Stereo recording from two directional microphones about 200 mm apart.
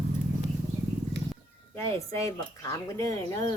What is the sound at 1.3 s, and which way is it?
Speech, 10° left (ahead or behind).